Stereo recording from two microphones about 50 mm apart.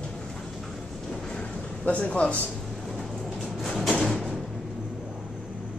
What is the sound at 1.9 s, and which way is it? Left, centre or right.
Speech, left.